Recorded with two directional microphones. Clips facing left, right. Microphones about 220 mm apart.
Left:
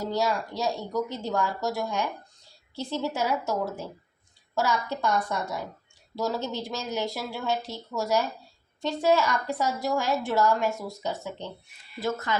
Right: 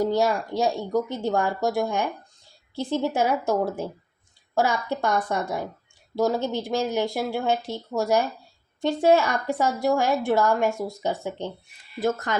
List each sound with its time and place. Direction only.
0.0 s a woman's voice: 50° right (ahead or behind)